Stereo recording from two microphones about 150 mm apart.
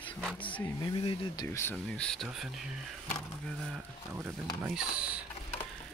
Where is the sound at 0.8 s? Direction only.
30° left (ahead or behind).